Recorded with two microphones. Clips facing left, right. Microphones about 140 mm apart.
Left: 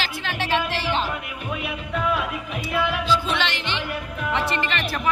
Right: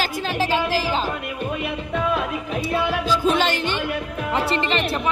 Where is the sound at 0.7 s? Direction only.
35° right (ahead or behind).